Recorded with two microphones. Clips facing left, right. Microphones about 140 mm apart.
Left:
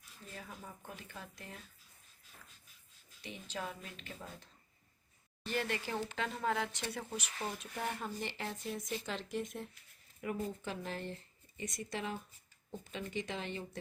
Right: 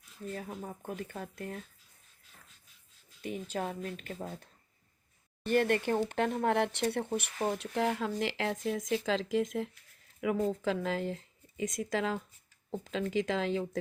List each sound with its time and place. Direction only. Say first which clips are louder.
0.3 s speech: right 4 dB; 45° right (ahead or behind)
3.2 s speech: right 8 dB; 50° right (ahead or behind)
5.5 s speech: right 10 dB; 55° right (ahead or behind); by 13.7 s 90° right